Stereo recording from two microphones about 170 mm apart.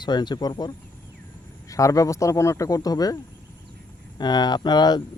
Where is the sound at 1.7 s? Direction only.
20° left (ahead or behind).